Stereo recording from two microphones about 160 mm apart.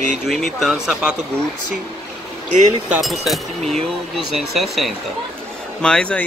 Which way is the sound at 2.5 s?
50° right (ahead or behind).